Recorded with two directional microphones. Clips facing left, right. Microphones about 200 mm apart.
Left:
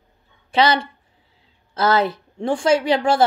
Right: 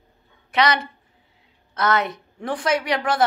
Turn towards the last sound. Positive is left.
turn(degrees=30)  # may be behind; listen again after turning